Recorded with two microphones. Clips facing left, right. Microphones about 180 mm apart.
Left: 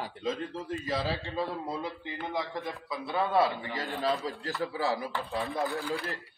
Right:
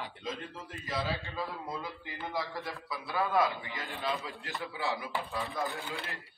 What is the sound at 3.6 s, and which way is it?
A man's voice, 40° left (ahead or behind).